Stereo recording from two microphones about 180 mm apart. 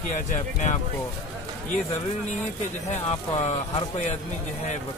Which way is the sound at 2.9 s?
40° left (ahead or behind).